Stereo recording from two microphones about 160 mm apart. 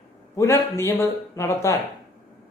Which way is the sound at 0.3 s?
15° left (ahead or behind).